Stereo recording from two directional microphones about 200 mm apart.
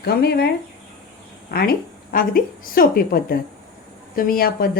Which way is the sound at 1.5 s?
55° left (ahead or behind).